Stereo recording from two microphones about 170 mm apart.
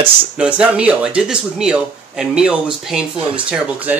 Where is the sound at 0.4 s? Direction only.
5° right (ahead or behind).